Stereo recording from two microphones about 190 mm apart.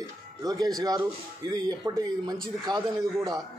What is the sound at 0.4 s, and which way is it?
A man's voice, 20° right (ahead or behind).